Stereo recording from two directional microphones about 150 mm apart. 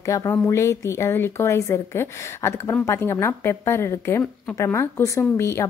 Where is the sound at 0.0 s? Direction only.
20° left (ahead or behind).